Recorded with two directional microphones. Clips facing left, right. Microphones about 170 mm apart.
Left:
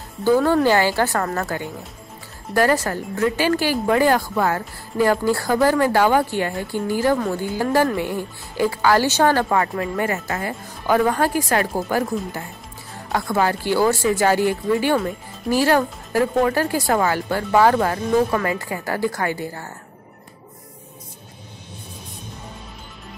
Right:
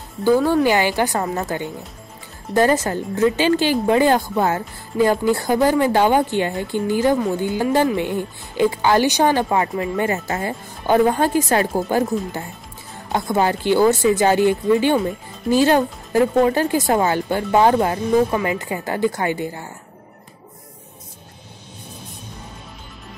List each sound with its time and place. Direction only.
0.4 s speech: centre (ahead or behind)
0.7 s a woman's voice: 15° right (ahead or behind)